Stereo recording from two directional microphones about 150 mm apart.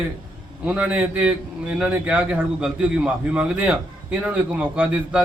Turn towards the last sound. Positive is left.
turn(degrees=-10)  # may be behind; listen again after turning